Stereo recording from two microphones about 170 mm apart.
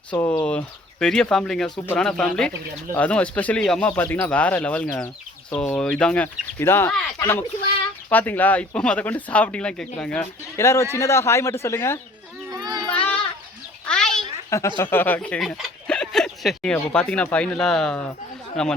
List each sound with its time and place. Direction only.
0.1 s speech: 15° left (ahead or behind)
10.6 s speech: 15° left (ahead or behind)
12.5 s a sound: 25° right (ahead or behind)
12.9 s child singing: 10° left (ahead or behind)
13.8 s a sound: 5° left (ahead or behind)
14.5 s speech: 15° left (ahead or behind)